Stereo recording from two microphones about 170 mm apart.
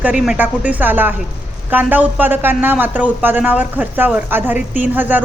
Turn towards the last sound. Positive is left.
turn(degrees=-10)  # may be behind; listen again after turning